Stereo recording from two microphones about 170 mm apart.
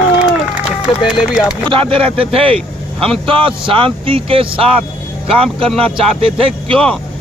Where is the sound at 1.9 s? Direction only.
35° right (ahead or behind).